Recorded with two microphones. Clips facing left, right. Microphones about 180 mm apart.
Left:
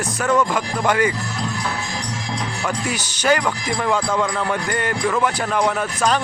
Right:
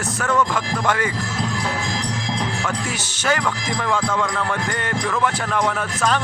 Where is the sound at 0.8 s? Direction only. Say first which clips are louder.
Left 4 dB; centre (ahead or behind).